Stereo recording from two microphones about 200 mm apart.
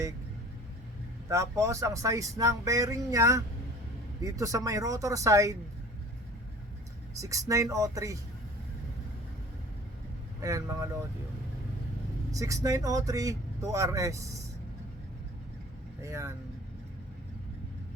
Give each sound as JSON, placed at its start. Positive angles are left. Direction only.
{"t": 1.3, "sound": "speech", "side_deg": -15}
{"t": 7.2, "sound": "speech", "side_deg": -15}
{"t": 10.4, "sound": "speech", "side_deg": -15}
{"t": 12.3, "sound": "speech", "side_deg": -15}
{"t": 16.0, "sound": "speech", "side_deg": -15}